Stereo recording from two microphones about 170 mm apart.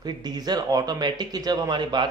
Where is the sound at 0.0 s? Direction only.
25° right (ahead or behind).